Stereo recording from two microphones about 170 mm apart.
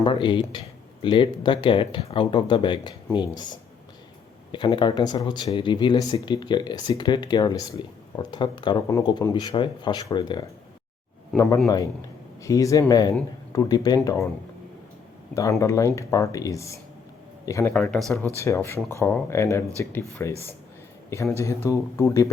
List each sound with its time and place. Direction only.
0.0 s speech: 30° left (ahead or behind)
11.3 s speech: 5° left (ahead or behind)
12.4 s speech: 20° left (ahead or behind)
15.4 s speech: 20° left (ahead or behind)
17.7 s speech: 5° left (ahead or behind)
18.3 s speech: 15° left (ahead or behind)
21.3 s speech: 15° left (ahead or behind)